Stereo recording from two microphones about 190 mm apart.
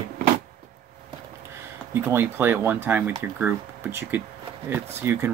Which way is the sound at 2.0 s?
10° right (ahead or behind).